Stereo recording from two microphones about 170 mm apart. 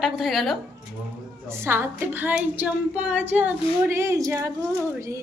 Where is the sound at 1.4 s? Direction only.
15° right (ahead or behind).